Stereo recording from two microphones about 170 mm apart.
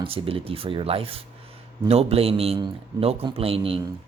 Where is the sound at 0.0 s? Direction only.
35° right (ahead or behind).